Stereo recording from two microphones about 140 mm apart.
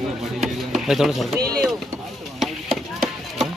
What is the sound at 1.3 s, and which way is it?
Speech, 90° right.